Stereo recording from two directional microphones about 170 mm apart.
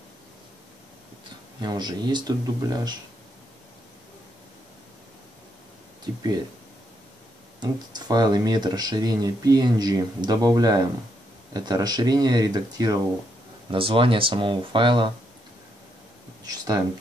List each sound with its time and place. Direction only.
1.6 s speech: 25° right (ahead or behind)
7.6 s speech: 25° right (ahead or behind)
16.4 s speech: 20° right (ahead or behind)